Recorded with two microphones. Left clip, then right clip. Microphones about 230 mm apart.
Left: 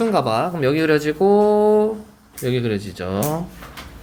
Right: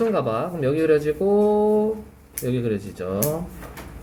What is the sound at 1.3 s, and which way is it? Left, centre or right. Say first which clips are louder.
Mantra: left 2 dB; left.